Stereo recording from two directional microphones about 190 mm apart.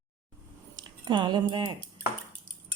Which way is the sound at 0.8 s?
25° right (ahead or behind).